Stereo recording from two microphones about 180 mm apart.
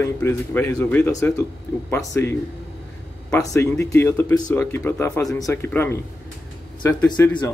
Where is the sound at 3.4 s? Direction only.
15° left (ahead or behind).